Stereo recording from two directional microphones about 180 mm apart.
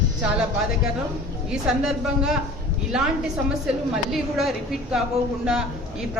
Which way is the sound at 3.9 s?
Centre (ahead or behind).